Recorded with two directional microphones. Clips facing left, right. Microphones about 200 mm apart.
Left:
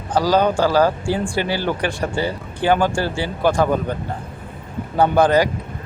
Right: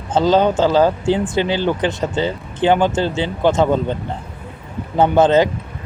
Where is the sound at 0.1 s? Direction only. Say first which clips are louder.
Right 2 dB; 25° right (ahead or behind).